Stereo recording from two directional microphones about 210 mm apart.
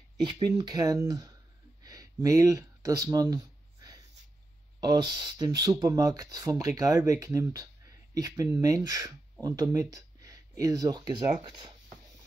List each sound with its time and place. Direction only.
0.2 s speech: 20° right (ahead or behind)
1.8 s a sound: 15° right (ahead or behind)
4.7 s speech: 20° right (ahead or behind)